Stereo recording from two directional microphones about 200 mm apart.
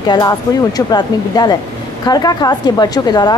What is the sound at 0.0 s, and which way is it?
Speech, 20° left (ahead or behind).